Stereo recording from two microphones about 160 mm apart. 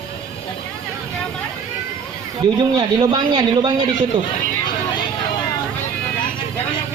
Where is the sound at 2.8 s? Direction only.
25° right (ahead or behind).